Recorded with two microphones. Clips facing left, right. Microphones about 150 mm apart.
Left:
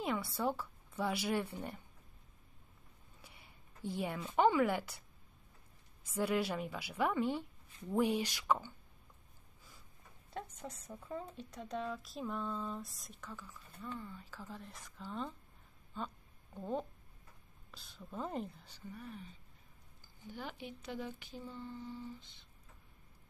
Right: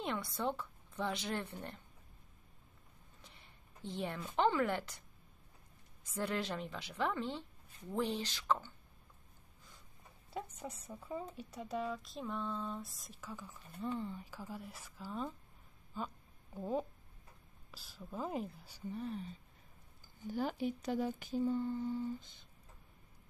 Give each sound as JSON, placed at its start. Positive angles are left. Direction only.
{"t": 0.0, "sound": "a woman's voice", "side_deg": 5}
{"t": 3.2, "sound": "a woman's voice", "side_deg": 10}
{"t": 6.1, "sound": "a woman's voice", "side_deg": 10}
{"t": 10.3, "sound": "speech", "side_deg": -5}
{"t": 13.9, "sound": "speech", "side_deg": -20}
{"t": 18.9, "sound": "speech", "side_deg": -30}